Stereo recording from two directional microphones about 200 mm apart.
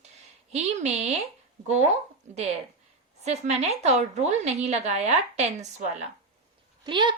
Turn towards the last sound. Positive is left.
turn(degrees=-25)  # may be behind; listen again after turning